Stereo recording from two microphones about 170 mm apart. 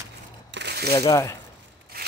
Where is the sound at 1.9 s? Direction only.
65° right (ahead or behind).